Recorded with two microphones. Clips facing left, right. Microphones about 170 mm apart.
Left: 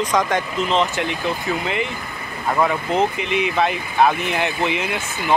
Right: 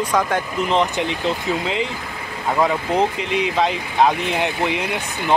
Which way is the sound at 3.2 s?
65° left (ahead or behind).